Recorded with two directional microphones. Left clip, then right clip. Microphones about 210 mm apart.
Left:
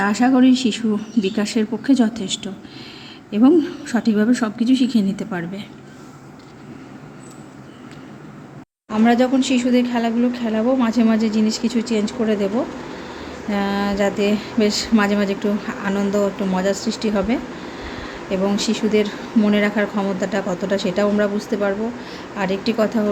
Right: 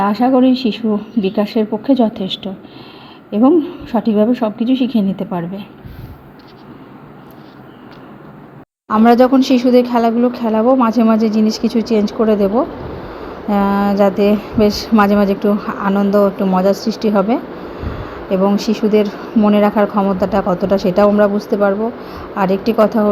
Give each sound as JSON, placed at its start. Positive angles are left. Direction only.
{"t": 0.0, "sound": "a woman's voice", "side_deg": -5}
{"t": 8.9, "sound": "speech", "side_deg": -20}